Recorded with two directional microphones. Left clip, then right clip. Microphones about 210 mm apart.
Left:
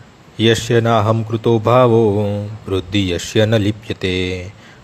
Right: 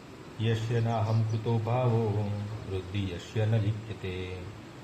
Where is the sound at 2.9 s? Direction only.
60° left (ahead or behind).